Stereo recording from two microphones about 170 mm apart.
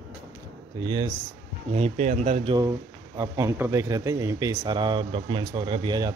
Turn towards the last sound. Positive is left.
turn(degrees=-25)  # may be behind; listen again after turning